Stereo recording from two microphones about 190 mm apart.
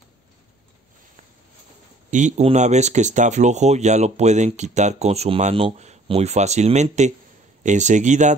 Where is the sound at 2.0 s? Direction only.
40° right (ahead or behind).